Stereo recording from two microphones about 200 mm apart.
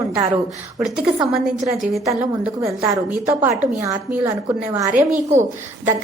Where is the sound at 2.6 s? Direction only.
15° right (ahead or behind).